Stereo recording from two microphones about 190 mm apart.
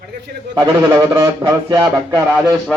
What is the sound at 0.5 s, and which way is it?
A man's voice, 20° right (ahead or behind).